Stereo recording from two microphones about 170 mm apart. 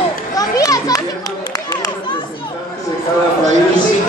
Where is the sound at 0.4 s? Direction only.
20° left (ahead or behind).